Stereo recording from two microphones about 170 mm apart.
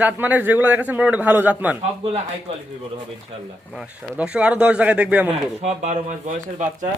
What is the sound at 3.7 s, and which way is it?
A man's voice, 5° right (ahead or behind).